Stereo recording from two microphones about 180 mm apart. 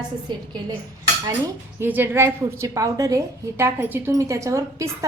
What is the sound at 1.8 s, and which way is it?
A woman's voice, 10° right (ahead or behind).